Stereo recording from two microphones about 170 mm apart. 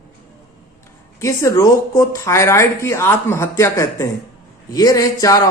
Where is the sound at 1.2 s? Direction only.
15° left (ahead or behind).